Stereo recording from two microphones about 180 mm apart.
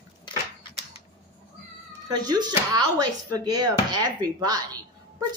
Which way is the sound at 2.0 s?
20° right (ahead or behind).